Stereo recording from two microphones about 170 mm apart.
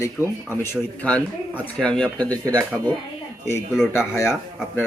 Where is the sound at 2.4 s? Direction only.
20° right (ahead or behind).